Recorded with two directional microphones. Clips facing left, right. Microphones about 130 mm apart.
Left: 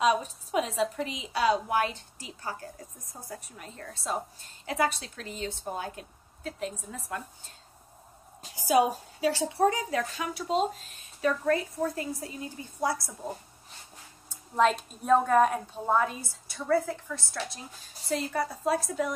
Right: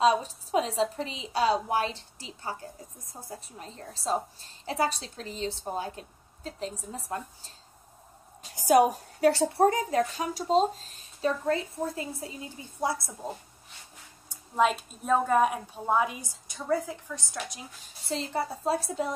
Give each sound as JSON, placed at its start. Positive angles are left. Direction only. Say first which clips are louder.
{"t": 0.0, "sound": "a woman's voice", "louder": "right 2 dB", "side_deg": -35}
{"t": 8.6, "sound": "a woman's voice", "louder": "right 3 dB", "side_deg": -60}
{"t": 9.7, "sound": "speech", "louder": "right 3 dB", "side_deg": -40}
{"t": 14.3, "sound": "a woman's voice", "louder": "left 1 dB", "side_deg": -10}